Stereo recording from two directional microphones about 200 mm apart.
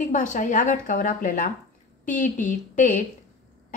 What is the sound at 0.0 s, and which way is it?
A woman's voice, 40° left (ahead or behind).